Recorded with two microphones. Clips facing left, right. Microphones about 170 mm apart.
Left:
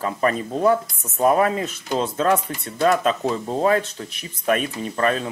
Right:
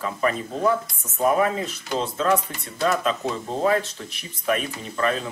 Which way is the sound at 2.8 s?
50° left (ahead or behind).